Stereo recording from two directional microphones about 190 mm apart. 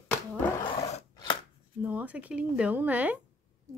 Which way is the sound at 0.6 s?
30° left (ahead or behind).